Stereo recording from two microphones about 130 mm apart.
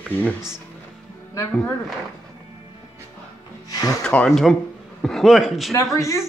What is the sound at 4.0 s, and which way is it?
Speech, 5° left (ahead or behind).